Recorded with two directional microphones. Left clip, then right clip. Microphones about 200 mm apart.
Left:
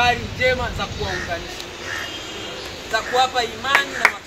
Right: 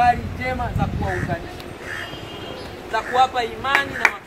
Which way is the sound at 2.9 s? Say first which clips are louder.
Right 1 dB; 50° left (ahead or behind).